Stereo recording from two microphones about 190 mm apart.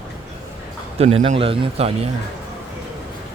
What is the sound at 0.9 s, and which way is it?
Speech, 30° right (ahead or behind).